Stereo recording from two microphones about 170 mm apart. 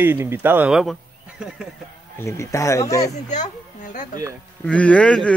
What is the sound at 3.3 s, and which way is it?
Speech, 50° left (ahead or behind).